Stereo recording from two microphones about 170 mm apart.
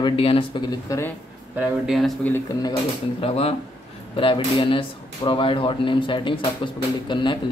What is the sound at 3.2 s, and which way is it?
Speech, 35° left (ahead or behind).